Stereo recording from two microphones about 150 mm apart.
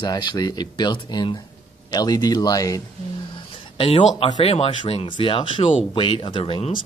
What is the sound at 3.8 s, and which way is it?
Speech, 45° left (ahead or behind).